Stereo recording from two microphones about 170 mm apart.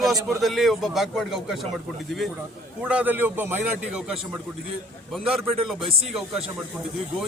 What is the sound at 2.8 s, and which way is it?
A man's voice, 5° right (ahead or behind).